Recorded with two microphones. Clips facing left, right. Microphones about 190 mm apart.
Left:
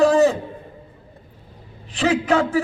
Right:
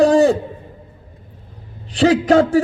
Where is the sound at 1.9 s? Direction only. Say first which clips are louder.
Right 6 dB; 35° right (ahead or behind).